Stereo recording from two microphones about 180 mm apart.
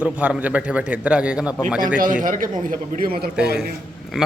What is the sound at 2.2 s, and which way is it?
A man's voice, 50° right (ahead or behind).